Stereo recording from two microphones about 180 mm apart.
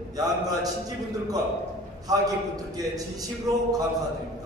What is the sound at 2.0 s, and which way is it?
A man's voice, 20° right (ahead or behind).